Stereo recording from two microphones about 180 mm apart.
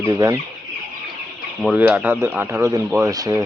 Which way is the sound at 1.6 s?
5° right (ahead or behind).